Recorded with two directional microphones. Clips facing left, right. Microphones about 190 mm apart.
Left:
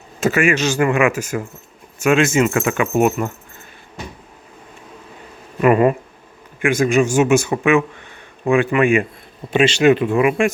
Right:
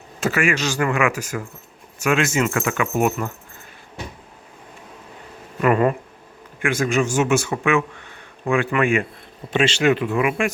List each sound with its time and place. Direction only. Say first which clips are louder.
0.2 s speech: left 4 dB; 20° left (ahead or behind)
5.6 s a man's voice: left 4 dB; 15° left (ahead or behind)